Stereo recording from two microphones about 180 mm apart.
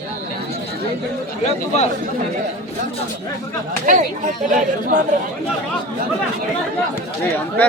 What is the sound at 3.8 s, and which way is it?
Speech, 45° right (ahead or behind).